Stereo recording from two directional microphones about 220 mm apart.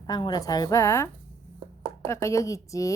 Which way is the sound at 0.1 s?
20° left (ahead or behind).